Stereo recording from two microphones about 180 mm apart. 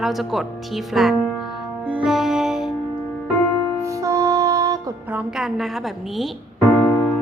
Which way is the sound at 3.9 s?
15° right (ahead or behind).